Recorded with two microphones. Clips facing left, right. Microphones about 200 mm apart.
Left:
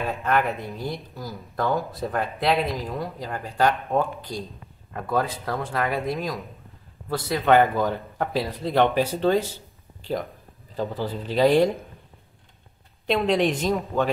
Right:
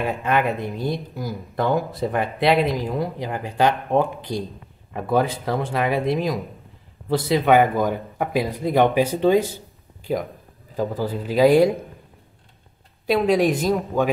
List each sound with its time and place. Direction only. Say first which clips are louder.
0.0 s speech: right 2 dB; 15° right (ahead or behind)
10.8 s speech: right 4 dB; 10° right (ahead or behind)
13.0 s speech: right 3 dB; 10° right (ahead or behind)